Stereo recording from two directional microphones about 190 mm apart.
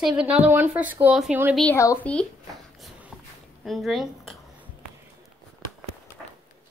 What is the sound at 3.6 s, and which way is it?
Speech, centre (ahead or behind).